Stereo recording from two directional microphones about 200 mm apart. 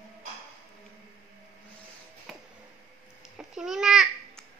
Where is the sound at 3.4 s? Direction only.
Centre (ahead or behind).